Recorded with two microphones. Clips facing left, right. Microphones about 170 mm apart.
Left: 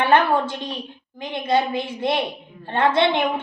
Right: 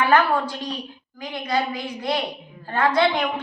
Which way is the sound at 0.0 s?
25° left (ahead or behind).